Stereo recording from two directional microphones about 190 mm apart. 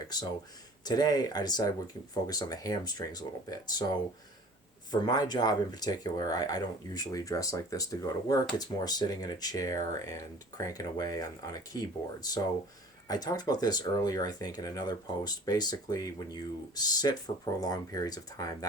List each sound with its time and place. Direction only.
0.9 s speech: 20° left (ahead or behind)